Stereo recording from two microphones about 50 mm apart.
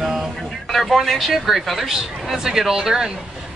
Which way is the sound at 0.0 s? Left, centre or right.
Centre.